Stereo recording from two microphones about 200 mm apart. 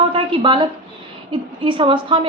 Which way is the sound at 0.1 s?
25° right (ahead or behind).